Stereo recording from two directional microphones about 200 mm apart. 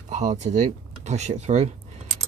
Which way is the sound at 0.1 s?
35° right (ahead or behind).